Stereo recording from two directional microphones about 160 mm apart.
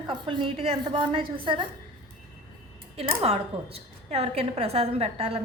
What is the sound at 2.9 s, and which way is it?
A woman's voice, 40° right (ahead or behind).